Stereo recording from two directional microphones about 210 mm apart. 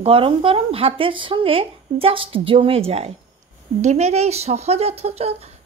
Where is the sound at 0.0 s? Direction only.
25° right (ahead or behind).